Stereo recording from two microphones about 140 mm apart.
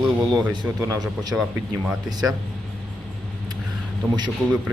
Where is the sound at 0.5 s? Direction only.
25° right (ahead or behind).